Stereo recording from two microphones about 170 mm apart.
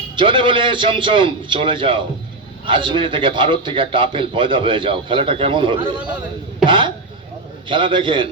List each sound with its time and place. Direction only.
0.2 s a man's voice: 30° right (ahead or behind)
6.7 s a sound: 30° right (ahead or behind)
7.7 s a man's voice: 30° right (ahead or behind)